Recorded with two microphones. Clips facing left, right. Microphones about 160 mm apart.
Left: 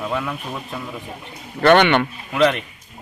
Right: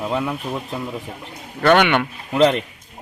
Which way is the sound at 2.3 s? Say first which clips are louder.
Right 2 dB; 30° right (ahead or behind).